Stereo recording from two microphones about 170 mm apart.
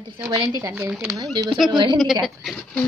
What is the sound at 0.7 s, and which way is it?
Speech, 5° right (ahead or behind).